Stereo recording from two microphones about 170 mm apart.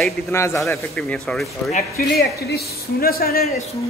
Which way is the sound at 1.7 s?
55° left (ahead or behind).